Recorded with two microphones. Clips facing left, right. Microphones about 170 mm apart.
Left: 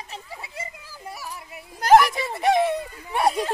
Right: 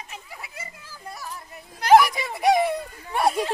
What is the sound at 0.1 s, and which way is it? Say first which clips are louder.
Children playing: left 3 dB; 25° left (ahead or behind).